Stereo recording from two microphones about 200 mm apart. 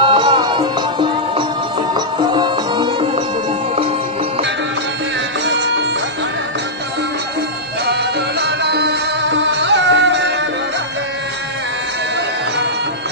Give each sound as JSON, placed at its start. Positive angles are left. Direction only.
{"t": 0.0, "sound": "music", "side_deg": -25}
{"t": 7.8, "sound": "music", "side_deg": -55}